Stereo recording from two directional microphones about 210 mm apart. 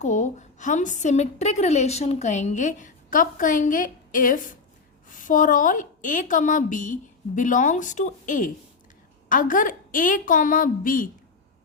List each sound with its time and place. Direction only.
0.0 s a woman's voice: 35° left (ahead or behind)